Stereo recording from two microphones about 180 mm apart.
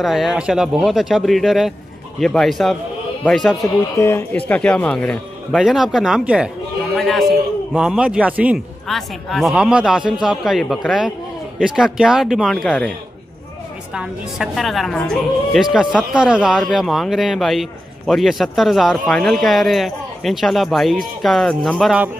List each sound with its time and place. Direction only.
0.0 s speech: centre (ahead or behind)
3.9 s speech: 15° left (ahead or behind)
13.9 s speech: centre (ahead or behind)